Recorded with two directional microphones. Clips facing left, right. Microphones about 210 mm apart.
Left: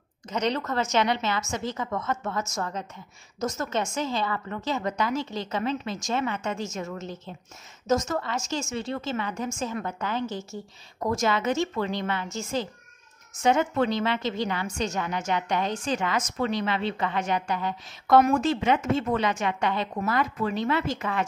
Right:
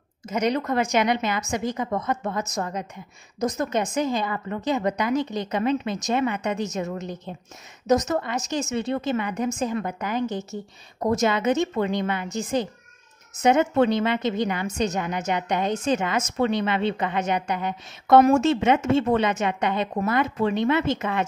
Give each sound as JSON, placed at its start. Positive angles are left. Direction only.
{"t": 0.3, "sound": "a woman's voice", "side_deg": -10}